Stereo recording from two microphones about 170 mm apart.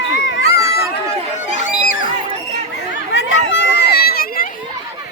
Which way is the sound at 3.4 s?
90° left.